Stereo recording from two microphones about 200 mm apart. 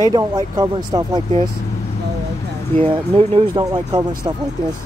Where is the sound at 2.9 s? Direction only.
25° right (ahead or behind).